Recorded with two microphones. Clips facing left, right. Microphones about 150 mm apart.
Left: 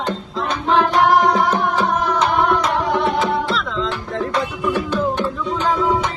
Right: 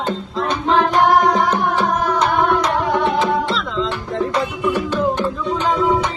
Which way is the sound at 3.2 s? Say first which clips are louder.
Right 1 dB; centre (ahead or behind).